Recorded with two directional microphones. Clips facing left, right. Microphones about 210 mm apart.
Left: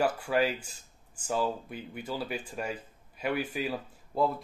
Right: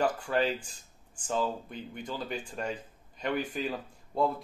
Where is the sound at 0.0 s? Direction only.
10° left (ahead or behind).